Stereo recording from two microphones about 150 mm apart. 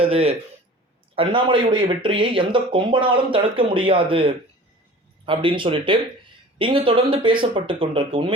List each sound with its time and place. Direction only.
0.0 s speech: 40° right (ahead or behind)